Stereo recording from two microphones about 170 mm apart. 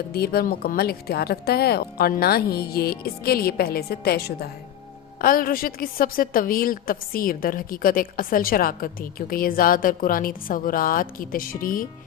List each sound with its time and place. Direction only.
0.1 s a woman's voice: 65° left (ahead or behind)